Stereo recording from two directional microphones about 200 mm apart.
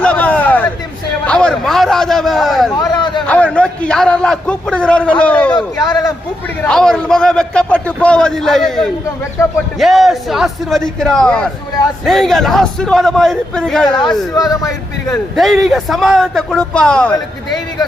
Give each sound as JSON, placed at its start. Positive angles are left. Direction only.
{"t": 0.0, "sound": "a sound", "side_deg": 5}
{"t": 1.2, "sound": "a man's voice", "side_deg": 5}
{"t": 2.7, "sound": "a sound", "side_deg": 20}
{"t": 3.2, "sound": "a man's voice", "side_deg": 5}
{"t": 5.5, "sound": "a man's voice", "side_deg": 20}
{"t": 6.7, "sound": "a man's voice", "side_deg": 5}
{"t": 9.4, "sound": "speech", "side_deg": 15}
{"t": 9.7, "sound": "a man's voice", "side_deg": 0}
{"t": 14.3, "sound": "speech", "side_deg": 15}
{"t": 15.4, "sound": "a man's voice", "side_deg": 0}